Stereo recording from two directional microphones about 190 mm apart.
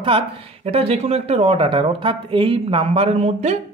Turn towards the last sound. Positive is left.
turn(degrees=-35)  # may be behind; listen again after turning